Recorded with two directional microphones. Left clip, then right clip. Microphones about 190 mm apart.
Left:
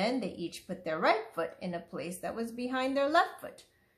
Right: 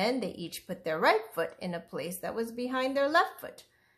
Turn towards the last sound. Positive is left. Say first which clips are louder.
# right 1 dB
turn(degrees=-35)  # may be behind; listen again after turning